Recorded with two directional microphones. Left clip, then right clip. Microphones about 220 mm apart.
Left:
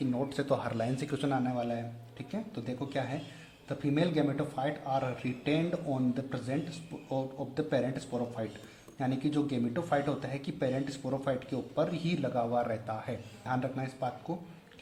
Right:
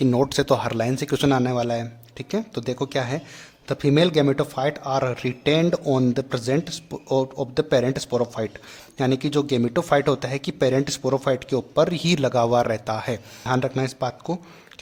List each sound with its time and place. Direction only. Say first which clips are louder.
0.0 s speech: right 13 dB; 40° right (ahead or behind)